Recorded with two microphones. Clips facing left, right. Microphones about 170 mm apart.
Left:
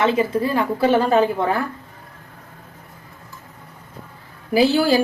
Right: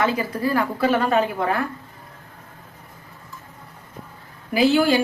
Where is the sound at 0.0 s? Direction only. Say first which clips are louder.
Left 4 dB; 25° left (ahead or behind).